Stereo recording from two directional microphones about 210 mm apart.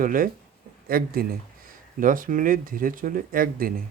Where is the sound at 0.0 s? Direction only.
40° right (ahead or behind).